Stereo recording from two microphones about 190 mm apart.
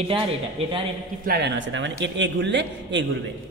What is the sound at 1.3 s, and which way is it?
A man's voice, 70° right (ahead or behind).